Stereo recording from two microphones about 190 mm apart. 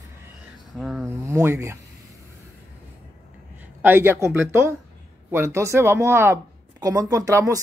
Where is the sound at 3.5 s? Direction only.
10° right (ahead or behind).